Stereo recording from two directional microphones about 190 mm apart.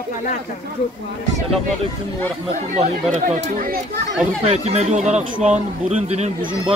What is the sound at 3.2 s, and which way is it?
A man's voice, 45° right (ahead or behind).